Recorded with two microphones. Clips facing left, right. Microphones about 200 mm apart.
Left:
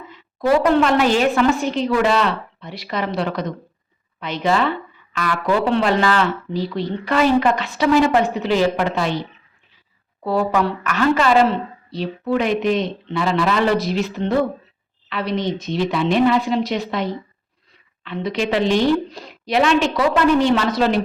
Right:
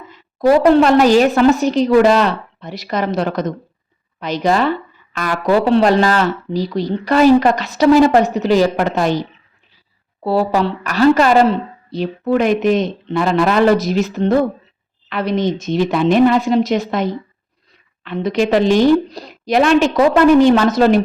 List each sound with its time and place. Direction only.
0.1 s a woman's voice: 40° right (ahead or behind)
10.2 s a woman's voice: 35° right (ahead or behind)